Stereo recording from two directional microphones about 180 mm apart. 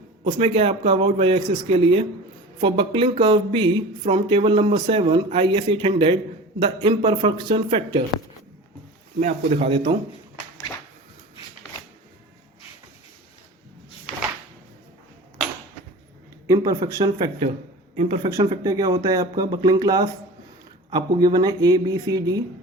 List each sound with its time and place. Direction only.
0.3 s speech: 30° right (ahead or behind)
9.2 s speech: 35° right (ahead or behind)
16.5 s speech: 20° right (ahead or behind)
17.9 s speech: 35° right (ahead or behind)
18.3 s speech: 20° right (ahead or behind)